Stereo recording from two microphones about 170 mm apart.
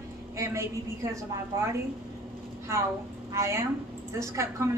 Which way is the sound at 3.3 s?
15° right (ahead or behind).